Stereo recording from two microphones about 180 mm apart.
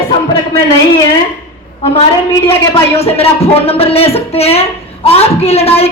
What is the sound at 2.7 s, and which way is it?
A woman's voice, 35° left (ahead or behind).